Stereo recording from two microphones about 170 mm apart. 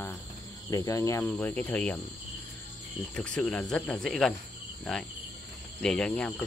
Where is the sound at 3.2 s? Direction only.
5° left (ahead or behind).